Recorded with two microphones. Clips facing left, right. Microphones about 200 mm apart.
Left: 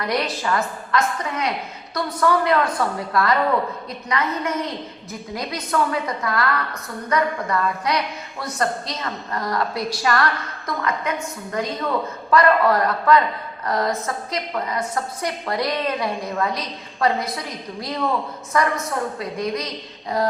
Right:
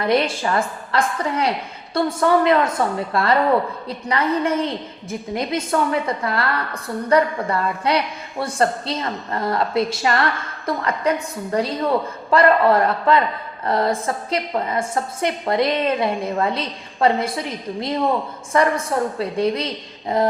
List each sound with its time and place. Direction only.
0.0 s a woman's voice: 25° right (ahead or behind)